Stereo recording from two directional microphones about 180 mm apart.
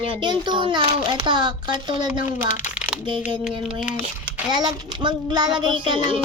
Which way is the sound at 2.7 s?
5° right (ahead or behind).